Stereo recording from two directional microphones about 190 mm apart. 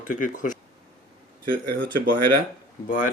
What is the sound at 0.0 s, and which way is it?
Speech, 45° left (ahead or behind).